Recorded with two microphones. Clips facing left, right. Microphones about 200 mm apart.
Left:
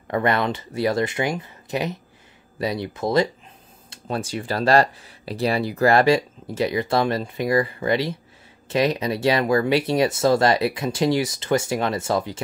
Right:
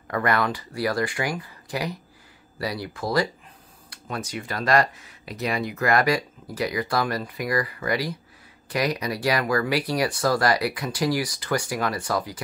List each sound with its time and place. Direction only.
0.1 s speech: 25° left (ahead or behind)